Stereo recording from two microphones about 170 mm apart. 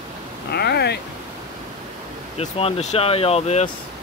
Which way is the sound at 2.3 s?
35° left (ahead or behind).